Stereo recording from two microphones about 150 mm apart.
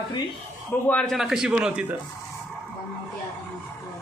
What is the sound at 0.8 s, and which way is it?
A man's voice, 5° left (ahead or behind).